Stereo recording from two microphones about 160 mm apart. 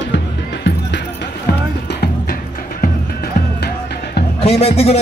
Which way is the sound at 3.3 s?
90° left.